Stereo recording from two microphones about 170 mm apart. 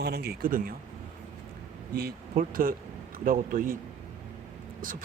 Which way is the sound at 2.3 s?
50° right (ahead or behind).